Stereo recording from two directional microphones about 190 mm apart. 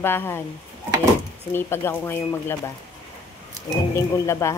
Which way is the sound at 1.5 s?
10° left (ahead or behind).